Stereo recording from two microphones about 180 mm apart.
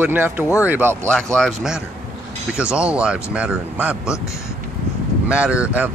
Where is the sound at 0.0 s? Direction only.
10° right (ahead or behind).